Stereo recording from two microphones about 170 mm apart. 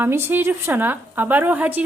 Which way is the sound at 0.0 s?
15° right (ahead or behind).